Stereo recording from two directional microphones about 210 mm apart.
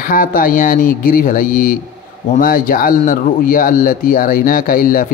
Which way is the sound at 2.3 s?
40° left (ahead or behind).